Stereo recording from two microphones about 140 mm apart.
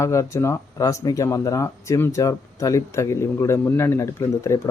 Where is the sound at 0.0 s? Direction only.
20° left (ahead or behind).